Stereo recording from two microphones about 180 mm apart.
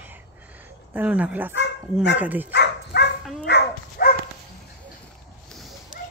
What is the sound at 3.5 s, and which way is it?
Dog, 65° left (ahead or behind).